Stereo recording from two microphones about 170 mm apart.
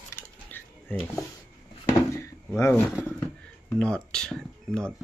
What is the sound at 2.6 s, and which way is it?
Speech, 15° left (ahead or behind).